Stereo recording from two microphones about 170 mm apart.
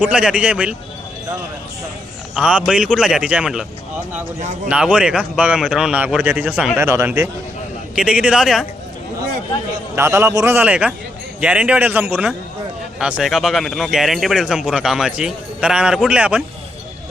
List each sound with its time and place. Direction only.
0.0 s a man's voice: 5° right (ahead or behind)
2.3 s speech: 5° right (ahead or behind)
4.4 s a man's voice: 40° right (ahead or behind)
4.7 s a man's voice: 5° right (ahead or behind)
9.9 s a man's voice: 20° right (ahead or behind)